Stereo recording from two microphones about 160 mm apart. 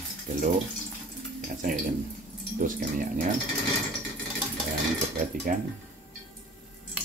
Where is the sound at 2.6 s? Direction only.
55° right (ahead or behind).